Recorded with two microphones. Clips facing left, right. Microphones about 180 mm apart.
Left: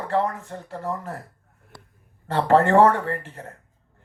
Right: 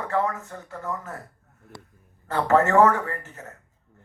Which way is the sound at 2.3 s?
30° left (ahead or behind).